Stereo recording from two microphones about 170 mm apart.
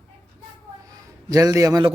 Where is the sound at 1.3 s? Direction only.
20° right (ahead or behind).